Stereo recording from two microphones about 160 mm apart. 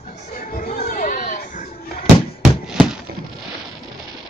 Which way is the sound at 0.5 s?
60° left (ahead or behind).